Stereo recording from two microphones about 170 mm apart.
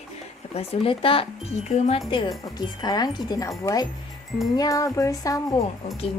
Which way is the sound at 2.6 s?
25° left (ahead or behind).